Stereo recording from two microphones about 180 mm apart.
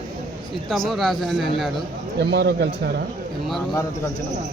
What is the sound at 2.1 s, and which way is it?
Speech, 70° right (ahead or behind).